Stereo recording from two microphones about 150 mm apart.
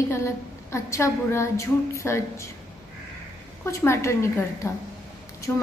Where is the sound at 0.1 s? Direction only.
20° left (ahead or behind).